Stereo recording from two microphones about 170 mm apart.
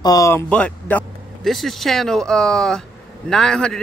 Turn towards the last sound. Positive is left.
turn(degrees=5)  # may be behind; listen again after turning